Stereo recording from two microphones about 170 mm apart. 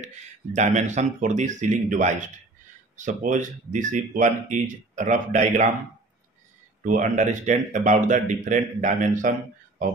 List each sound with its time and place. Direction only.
0.6 s speech: 45° right (ahead or behind)
6.8 s speech: 50° right (ahead or behind)